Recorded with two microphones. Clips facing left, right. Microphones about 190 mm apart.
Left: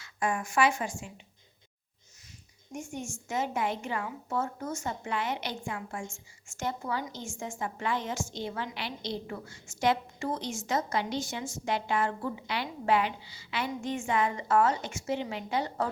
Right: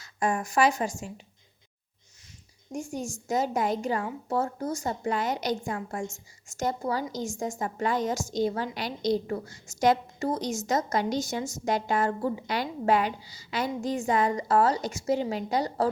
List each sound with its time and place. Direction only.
0.0 s a woman's voice: 40° right (ahead or behind)
2.7 s a woman's voice: 35° right (ahead or behind)